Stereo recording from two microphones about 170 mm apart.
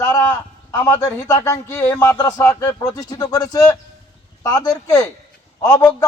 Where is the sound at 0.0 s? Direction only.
20° left (ahead or behind).